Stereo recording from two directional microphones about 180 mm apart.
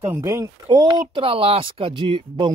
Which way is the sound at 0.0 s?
15° right (ahead or behind).